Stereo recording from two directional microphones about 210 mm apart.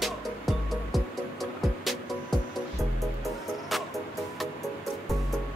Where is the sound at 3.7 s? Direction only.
Centre (ahead or behind).